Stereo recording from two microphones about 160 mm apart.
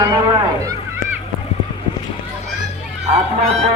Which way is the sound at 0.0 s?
15° right (ahead or behind).